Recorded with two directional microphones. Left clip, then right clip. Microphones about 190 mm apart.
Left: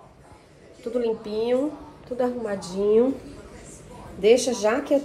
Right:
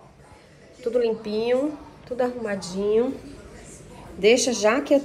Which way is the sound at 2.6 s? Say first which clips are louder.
Left 3 dB; 25° left (ahead or behind).